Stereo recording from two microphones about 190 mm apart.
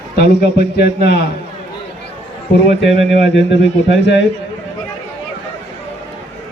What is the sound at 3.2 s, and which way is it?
Speech, 70° left (ahead or behind).